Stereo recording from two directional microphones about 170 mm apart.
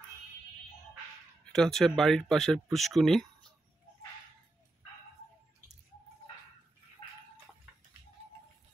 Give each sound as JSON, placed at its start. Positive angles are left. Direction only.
{"t": 1.4, "sound": "speech", "side_deg": 5}